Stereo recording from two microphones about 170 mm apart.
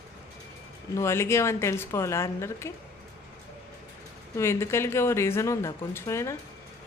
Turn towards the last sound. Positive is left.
turn(degrees=15)  # may be behind; listen again after turning